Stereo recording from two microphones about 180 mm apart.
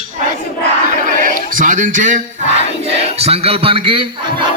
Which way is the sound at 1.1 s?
50° right (ahead or behind).